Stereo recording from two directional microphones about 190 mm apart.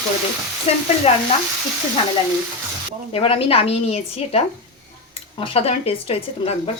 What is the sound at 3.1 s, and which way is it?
Speech, 30° left (ahead or behind).